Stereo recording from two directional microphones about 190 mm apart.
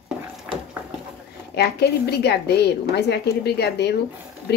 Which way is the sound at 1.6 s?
60° left (ahead or behind).